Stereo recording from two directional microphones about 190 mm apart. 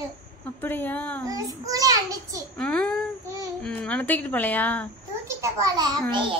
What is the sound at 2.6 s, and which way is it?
A child's voice, 5° left (ahead or behind).